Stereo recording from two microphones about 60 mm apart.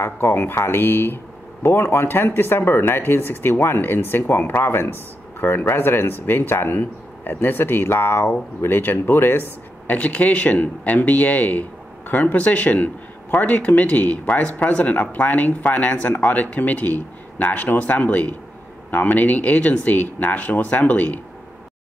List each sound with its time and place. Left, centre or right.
0.0 s speech: left
9.8 s speech: left